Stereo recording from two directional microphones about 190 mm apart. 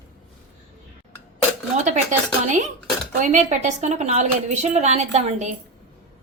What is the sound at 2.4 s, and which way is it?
A woman's voice, 40° right (ahead or behind).